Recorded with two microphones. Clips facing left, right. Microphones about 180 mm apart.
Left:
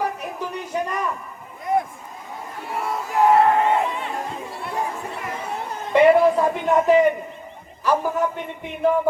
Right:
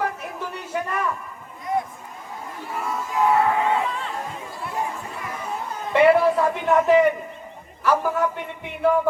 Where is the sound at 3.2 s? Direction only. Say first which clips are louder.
Left 4 dB; 40° left (ahead or behind).